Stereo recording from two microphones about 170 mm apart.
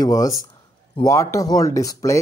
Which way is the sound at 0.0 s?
20° left (ahead or behind).